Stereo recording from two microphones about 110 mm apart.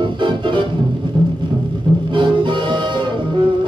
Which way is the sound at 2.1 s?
45° right (ahead or behind).